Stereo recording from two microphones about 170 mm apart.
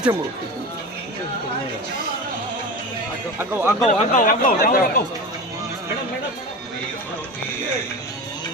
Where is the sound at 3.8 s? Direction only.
45° left (ahead or behind).